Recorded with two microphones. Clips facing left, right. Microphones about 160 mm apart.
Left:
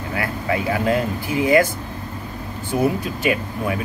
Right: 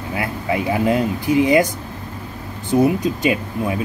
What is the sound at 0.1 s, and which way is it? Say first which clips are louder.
Speech: right 1 dB; 20° right (ahead or behind).